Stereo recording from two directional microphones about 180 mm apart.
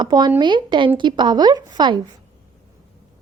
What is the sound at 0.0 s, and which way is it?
A woman's voice, 25° right (ahead or behind).